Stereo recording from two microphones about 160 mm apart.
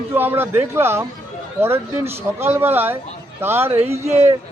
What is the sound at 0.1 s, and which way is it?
A man's voice, 15° right (ahead or behind).